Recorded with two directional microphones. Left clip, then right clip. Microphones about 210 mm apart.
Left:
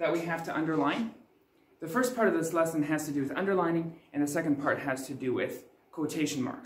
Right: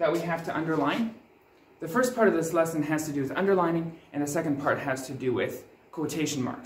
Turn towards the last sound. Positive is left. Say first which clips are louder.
# right 2 dB
turn(degrees=0)  # may be behind; listen again after turning